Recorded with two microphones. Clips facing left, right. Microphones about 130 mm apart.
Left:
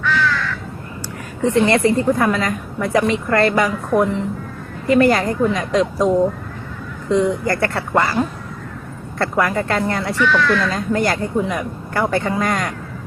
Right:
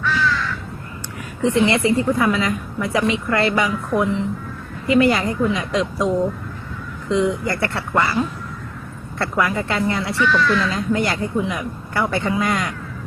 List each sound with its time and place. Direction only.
0.0 s crow: 65° left (ahead or behind)
1.4 s a woman's voice: 45° left (ahead or behind)
10.2 s a woman's voice: 70° left (ahead or behind); by 12.7 s 45° left (ahead or behind)